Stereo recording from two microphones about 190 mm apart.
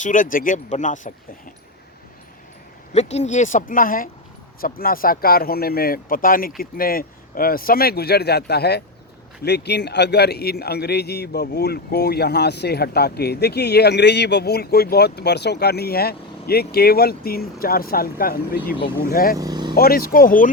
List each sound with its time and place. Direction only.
0.0 s speech: 45° left (ahead or behind)
2.9 s a man's voice: 35° left (ahead or behind)
19.4 s speech: 20° right (ahead or behind)
19.7 s speech: 50° left (ahead or behind)